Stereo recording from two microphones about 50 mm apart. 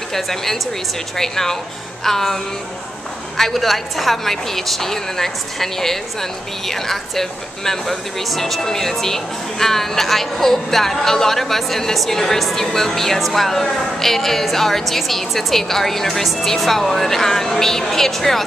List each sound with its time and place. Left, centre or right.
0.1 s speech: centre